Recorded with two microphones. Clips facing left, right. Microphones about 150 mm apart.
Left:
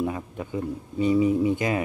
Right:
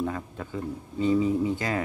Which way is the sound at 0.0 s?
15° left (ahead or behind).